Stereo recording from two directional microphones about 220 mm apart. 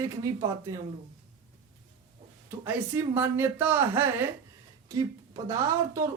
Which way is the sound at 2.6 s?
10° right (ahead or behind).